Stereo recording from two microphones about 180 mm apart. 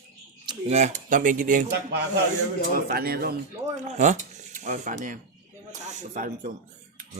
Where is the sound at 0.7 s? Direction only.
40° right (ahead or behind).